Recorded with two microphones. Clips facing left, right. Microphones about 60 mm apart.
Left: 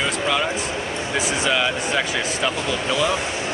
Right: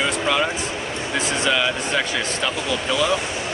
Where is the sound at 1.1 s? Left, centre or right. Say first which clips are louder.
Even; centre.